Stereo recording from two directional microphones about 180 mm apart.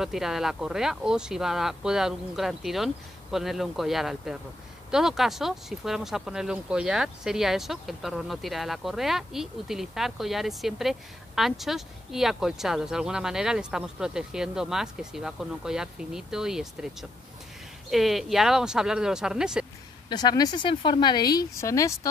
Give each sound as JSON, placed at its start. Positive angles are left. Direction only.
{"t": 0.0, "sound": "speech", "side_deg": 0}
{"t": 20.1, "sound": "speech", "side_deg": 20}